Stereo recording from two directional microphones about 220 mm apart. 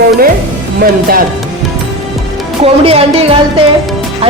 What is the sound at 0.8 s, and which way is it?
Speech, 40° right (ahead or behind).